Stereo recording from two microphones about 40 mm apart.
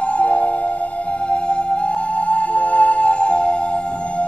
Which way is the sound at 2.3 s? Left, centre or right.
Left.